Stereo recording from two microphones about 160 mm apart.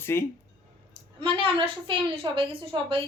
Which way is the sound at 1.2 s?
35° right (ahead or behind).